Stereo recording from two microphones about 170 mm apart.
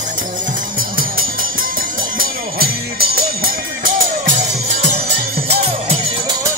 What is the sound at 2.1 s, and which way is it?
Music, 65° right (ahead or behind).